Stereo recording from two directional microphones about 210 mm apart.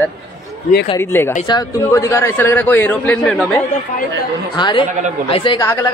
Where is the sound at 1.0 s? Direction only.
10° left (ahead or behind).